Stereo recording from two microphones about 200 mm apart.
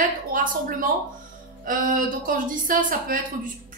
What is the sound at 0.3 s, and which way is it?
A woman's voice, 45° right (ahead or behind).